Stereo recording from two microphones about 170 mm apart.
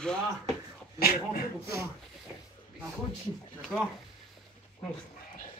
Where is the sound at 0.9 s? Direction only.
65° left (ahead or behind).